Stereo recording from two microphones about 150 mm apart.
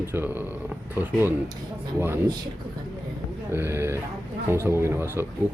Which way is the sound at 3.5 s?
15° right (ahead or behind).